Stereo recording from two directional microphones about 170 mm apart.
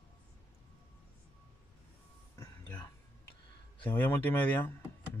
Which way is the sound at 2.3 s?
15° left (ahead or behind).